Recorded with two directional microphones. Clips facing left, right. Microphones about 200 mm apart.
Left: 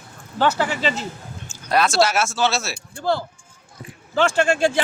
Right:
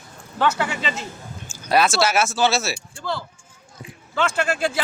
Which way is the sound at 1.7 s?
5° right (ahead or behind).